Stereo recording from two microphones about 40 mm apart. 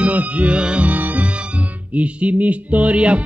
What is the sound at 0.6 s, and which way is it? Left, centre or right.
Music, right.